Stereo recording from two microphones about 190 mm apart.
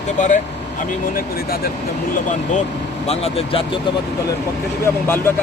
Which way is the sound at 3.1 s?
30° left (ahead or behind).